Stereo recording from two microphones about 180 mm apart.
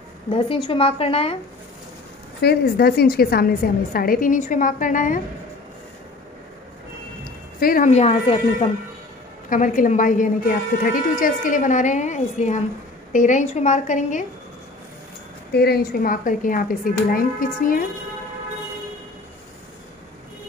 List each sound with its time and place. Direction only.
0.3 s a woman's voice: 25° left (ahead or behind)
2.4 s a woman's voice: 60° left (ahead or behind)
7.6 s a woman's voice: 45° left (ahead or behind)
9.5 s a woman's voice: 45° left (ahead or behind)
15.5 s a woman's voice: 60° left (ahead or behind)